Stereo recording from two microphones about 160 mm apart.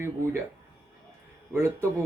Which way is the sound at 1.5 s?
15° right (ahead or behind).